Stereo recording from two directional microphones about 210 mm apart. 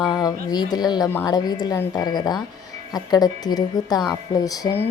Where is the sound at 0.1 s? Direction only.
20° left (ahead or behind).